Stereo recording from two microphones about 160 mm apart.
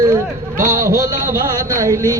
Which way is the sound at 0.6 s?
20° right (ahead or behind).